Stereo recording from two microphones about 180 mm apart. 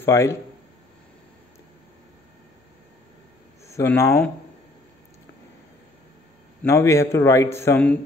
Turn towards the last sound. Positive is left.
turn(degrees=10)  # may be behind; listen again after turning